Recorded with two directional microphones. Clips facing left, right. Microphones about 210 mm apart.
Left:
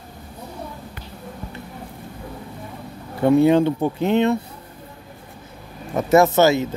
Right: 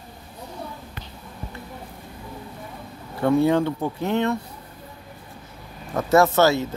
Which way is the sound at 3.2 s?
20° left (ahead or behind).